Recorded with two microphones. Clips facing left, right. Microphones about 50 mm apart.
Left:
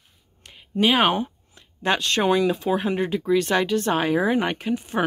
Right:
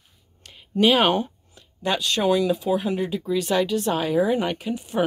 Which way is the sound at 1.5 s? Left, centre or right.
Left.